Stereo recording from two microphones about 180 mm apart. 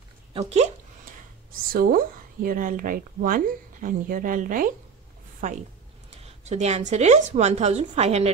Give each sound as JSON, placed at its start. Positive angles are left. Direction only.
{"t": 0.3, "sound": "speech", "side_deg": -35}
{"t": 1.7, "sound": "speech", "side_deg": -55}
{"t": 6.0, "sound": "speech", "side_deg": -35}